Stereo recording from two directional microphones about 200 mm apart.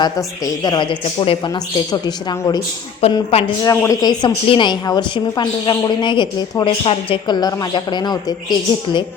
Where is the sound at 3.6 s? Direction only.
15° left (ahead or behind).